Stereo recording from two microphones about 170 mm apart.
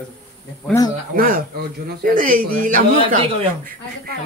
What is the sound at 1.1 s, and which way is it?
A man's voice, 60° right (ahead or behind).